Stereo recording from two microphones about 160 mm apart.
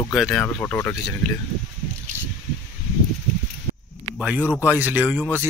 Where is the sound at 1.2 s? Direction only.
Centre (ahead or behind).